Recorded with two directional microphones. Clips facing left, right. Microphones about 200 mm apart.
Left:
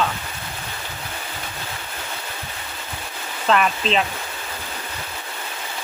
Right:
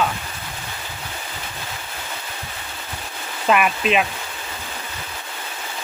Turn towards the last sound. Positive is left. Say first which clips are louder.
# right 1 dB
turn(degrees=-10)  # may be behind; listen again after turning